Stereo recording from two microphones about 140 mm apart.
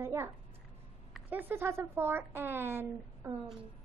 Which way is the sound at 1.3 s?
15° right (ahead or behind).